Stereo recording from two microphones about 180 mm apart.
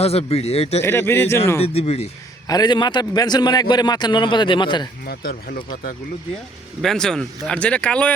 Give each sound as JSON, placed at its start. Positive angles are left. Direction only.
{"t": 0.0, "sound": "a man's voice", "side_deg": 35}
{"t": 0.8, "sound": "speech", "side_deg": 15}
{"t": 1.6, "sound": "a man's voice", "side_deg": 35}
{"t": 2.5, "sound": "a man's voice", "side_deg": 25}
{"t": 5.0, "sound": "speech", "side_deg": 55}
{"t": 6.8, "sound": "speech", "side_deg": 5}